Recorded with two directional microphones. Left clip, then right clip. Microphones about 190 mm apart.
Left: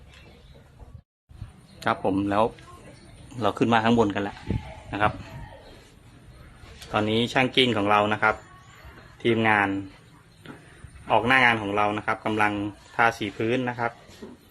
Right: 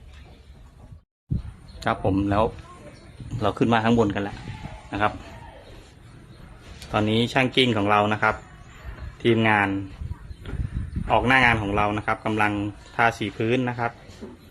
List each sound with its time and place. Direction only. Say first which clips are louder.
1.8 s a man's voice: right 1 dB; centre (ahead or behind)
6.9 s a man's voice: right 1 dB; 5° right (ahead or behind)
11.1 s a man's voice: right 1 dB; 5° right (ahead or behind)